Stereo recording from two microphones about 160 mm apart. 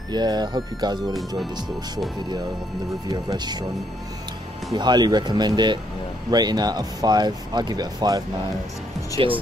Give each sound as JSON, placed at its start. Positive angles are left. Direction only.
{"t": 0.1, "sound": "speech", "side_deg": -25}
{"t": 3.1, "sound": "speech", "side_deg": -25}
{"t": 4.7, "sound": "speech", "side_deg": -25}
{"t": 9.2, "sound": "speech", "side_deg": -35}